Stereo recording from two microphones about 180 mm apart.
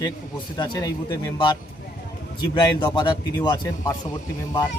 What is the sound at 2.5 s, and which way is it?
A man's voice, 25° left (ahead or behind).